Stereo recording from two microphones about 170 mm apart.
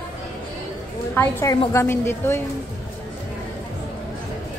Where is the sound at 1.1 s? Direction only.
15° left (ahead or behind).